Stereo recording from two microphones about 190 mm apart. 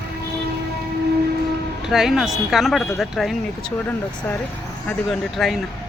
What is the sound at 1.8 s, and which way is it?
Speech, centre (ahead or behind).